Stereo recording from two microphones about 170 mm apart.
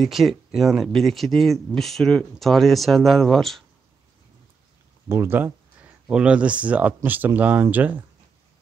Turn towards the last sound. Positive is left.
turn(degrees=-10)  # may be behind; listen again after turning